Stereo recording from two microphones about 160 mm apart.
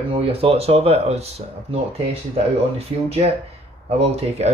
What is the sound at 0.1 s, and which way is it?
Speech, 35° right (ahead or behind).